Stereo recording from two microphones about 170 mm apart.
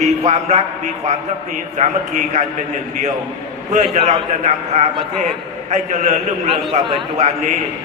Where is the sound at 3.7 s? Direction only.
45° right (ahead or behind).